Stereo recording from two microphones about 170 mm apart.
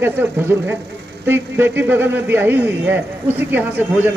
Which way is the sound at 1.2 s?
15° right (ahead or behind).